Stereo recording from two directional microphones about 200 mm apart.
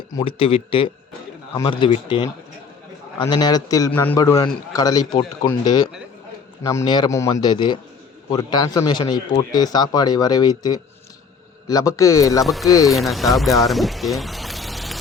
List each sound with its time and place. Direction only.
0.1 s a man's voice: 20° left (ahead or behind)
12.9 s speech: centre (ahead or behind)